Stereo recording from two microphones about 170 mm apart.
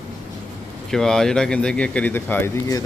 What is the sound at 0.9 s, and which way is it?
Speech, 5° left (ahead or behind).